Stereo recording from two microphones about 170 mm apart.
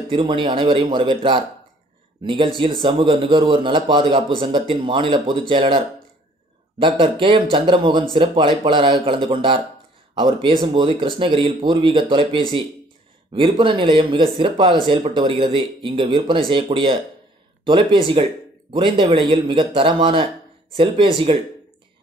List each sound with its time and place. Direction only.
0.1 s a man's voice: 30° right (ahead or behind)
6.8 s a man's voice: 30° right (ahead or behind)
18.1 s a man's voice: 30° right (ahead or behind)